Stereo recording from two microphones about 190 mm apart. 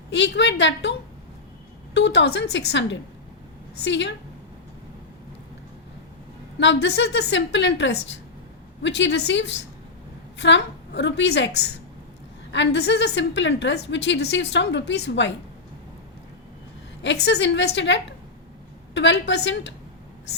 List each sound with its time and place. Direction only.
0.1 s a woman's voice: 70° left (ahead or behind)
6.6 s a woman's voice: 65° left (ahead or behind)
17.0 s a woman's voice: 65° left (ahead or behind)